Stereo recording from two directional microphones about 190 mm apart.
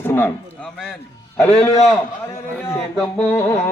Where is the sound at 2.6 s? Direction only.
10° left (ahead or behind).